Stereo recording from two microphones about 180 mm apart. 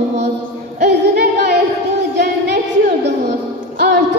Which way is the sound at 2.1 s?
70° right (ahead or behind).